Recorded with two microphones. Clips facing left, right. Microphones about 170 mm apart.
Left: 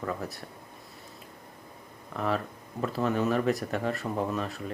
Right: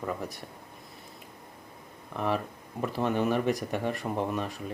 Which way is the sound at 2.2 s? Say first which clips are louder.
Even; 15° right (ahead or behind).